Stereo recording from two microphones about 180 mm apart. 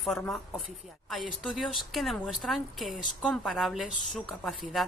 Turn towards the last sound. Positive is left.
turn(degrees=0)  # may be behind; listen again after turning